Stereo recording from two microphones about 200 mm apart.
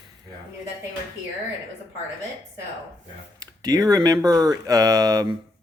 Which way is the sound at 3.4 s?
20° right (ahead or behind).